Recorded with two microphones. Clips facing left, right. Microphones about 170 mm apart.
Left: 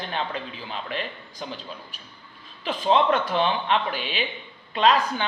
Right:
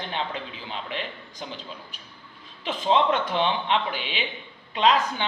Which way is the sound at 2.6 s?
20° right (ahead or behind).